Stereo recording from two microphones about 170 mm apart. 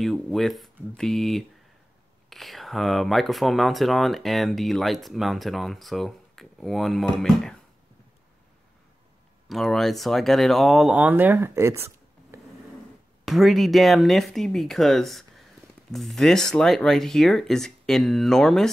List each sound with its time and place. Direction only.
0.0 s speech: centre (ahead or behind)
9.5 s speech: centre (ahead or behind); by 11.8 s 15° right (ahead or behind)
12.3 s a sound: 15° right (ahead or behind)
13.2 s speech: centre (ahead or behind)